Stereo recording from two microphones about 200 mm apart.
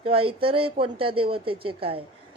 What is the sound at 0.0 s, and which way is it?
Speech, 25° right (ahead or behind).